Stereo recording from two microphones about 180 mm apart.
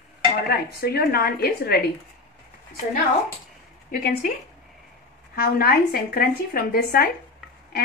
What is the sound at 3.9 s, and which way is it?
Speech, 45° left (ahead or behind).